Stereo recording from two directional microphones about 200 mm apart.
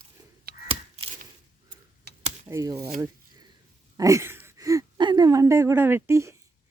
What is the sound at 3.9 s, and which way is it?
Speech, 15° right (ahead or behind).